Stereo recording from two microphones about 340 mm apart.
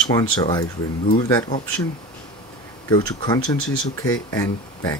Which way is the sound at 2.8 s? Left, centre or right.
Centre.